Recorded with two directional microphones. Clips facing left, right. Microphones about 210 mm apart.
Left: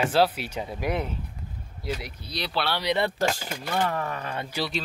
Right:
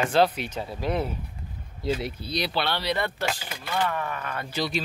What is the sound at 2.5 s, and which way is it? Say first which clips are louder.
Speech: left 3 dB; centre (ahead or behind).